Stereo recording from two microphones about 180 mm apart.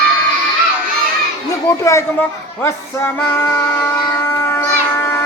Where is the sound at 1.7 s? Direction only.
15° left (ahead or behind).